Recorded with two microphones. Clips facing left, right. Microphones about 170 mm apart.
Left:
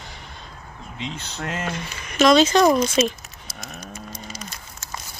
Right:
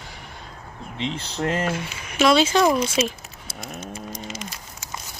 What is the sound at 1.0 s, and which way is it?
Speech, 30° right (ahead or behind).